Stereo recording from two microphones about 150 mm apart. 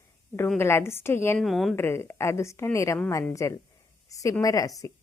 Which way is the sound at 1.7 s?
15° left (ahead or behind).